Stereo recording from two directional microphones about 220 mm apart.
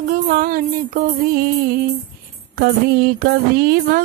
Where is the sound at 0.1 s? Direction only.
40° right (ahead or behind).